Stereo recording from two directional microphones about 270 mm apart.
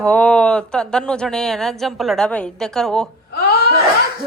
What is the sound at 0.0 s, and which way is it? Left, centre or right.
Speech, centre.